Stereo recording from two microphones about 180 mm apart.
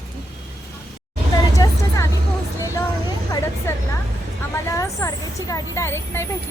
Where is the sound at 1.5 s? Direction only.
20° left (ahead or behind).